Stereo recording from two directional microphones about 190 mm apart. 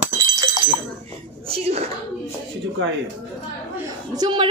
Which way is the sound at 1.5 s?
35° right (ahead or behind).